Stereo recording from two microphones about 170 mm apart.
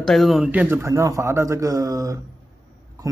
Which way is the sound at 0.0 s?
Centre (ahead or behind).